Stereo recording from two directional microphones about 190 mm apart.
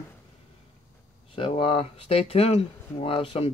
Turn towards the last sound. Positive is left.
turn(degrees=30)  # may be behind; listen again after turning